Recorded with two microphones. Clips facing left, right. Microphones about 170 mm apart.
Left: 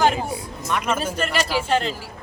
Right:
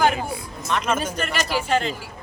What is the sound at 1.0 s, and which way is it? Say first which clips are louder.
Speech: left 2 dB; 5° left (ahead or behind).